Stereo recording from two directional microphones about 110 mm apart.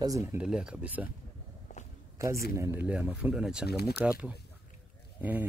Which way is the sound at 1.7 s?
90° left.